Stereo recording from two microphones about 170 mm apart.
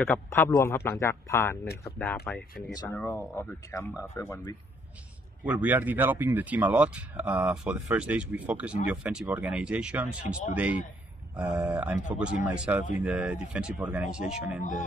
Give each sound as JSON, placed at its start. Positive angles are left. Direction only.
{"t": 0.0, "sound": "a man's voice", "side_deg": 10}
{"t": 2.0, "sound": "speech", "side_deg": 0}
{"t": 2.7, "sound": "speech", "side_deg": 20}
{"t": 3.0, "sound": "a man's voice", "side_deg": 10}
{"t": 5.4, "sound": "speech", "side_deg": -10}
{"t": 11.5, "sound": "speech", "side_deg": -20}
{"t": 12.1, "sound": "speech", "side_deg": -5}